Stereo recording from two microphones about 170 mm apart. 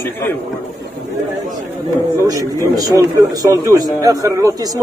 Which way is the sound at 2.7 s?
20° right (ahead or behind).